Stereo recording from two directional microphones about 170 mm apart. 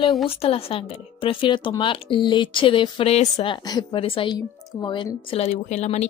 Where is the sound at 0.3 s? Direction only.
35° left (ahead or behind).